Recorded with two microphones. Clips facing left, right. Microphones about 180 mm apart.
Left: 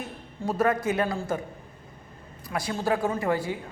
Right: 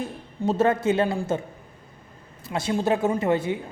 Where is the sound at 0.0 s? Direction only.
25° right (ahead or behind).